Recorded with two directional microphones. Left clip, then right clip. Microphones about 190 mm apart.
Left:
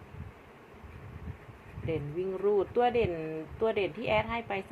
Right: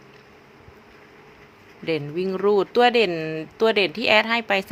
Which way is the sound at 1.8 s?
50° right (ahead or behind).